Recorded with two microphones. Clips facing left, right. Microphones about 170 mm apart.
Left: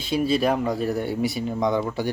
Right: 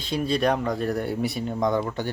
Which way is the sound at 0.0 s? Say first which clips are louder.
Left 2 dB; 5° left (ahead or behind).